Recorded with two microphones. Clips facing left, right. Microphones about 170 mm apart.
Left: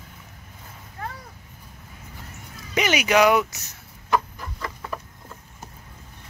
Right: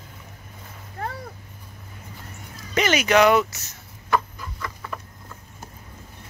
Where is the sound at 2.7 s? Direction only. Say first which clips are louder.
Right 1 dB; 10° left (ahead or behind).